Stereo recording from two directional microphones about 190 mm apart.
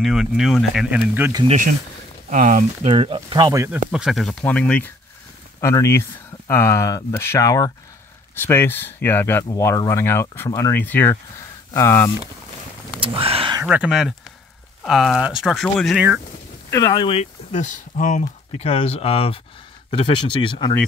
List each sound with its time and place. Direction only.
0.0 s speech: centre (ahead or behind)
1.3 s speech: 25° right (ahead or behind)
2.2 s speech: 45° right (ahead or behind); by 3.8 s 15° right (ahead or behind)
3.9 s speech: centre (ahead or behind)
13.0 s speech: 30° right (ahead or behind)
13.7 s speech: 5° right (ahead or behind)
16.7 s speech: 20° left (ahead or behind)